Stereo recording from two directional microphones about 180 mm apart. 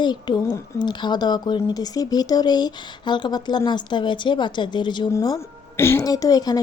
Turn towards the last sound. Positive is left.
turn(degrees=20)  # may be behind; listen again after turning